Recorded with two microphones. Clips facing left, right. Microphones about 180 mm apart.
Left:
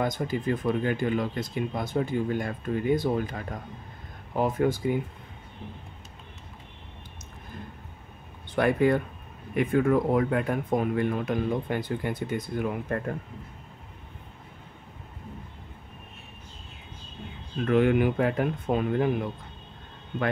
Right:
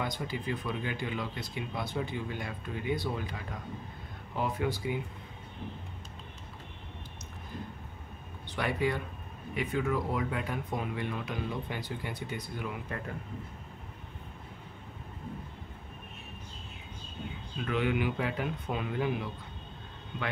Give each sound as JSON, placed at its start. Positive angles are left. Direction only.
{"t": 0.0, "sound": "speech", "side_deg": 45}
{"t": 8.5, "sound": "speech", "side_deg": 50}
{"t": 17.6, "sound": "speech", "side_deg": 50}